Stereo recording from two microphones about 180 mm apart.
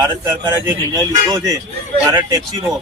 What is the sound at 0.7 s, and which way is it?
Speech, 15° right (ahead or behind).